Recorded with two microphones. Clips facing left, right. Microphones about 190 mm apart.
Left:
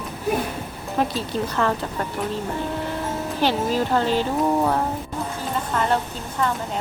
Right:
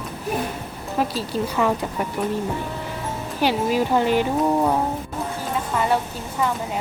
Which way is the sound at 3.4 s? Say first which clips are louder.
Right 2 dB; 10° right (ahead or behind).